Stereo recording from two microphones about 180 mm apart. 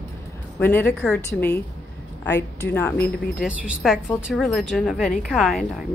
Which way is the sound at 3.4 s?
5° right (ahead or behind).